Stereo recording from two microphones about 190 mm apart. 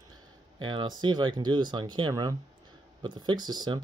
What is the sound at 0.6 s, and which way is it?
Speech, 25° right (ahead or behind).